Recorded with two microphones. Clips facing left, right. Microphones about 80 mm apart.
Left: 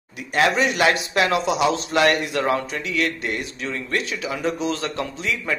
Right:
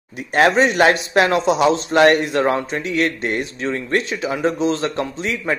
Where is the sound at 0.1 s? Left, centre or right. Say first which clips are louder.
Right 5 dB; right.